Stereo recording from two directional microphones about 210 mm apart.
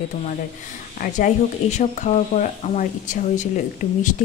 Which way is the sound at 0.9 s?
40° left (ahead or behind).